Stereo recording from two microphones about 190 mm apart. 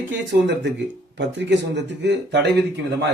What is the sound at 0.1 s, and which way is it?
Speech, 70° right (ahead or behind).